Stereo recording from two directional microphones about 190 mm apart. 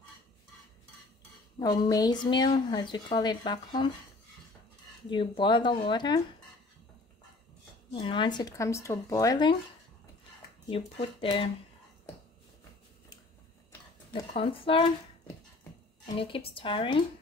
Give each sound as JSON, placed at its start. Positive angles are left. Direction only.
{"t": 1.6, "sound": "speech", "side_deg": 20}
{"t": 5.1, "sound": "speech", "side_deg": 25}
{"t": 7.9, "sound": "speech", "side_deg": 25}
{"t": 10.7, "sound": "speech", "side_deg": 30}
{"t": 14.3, "sound": "speech", "side_deg": 30}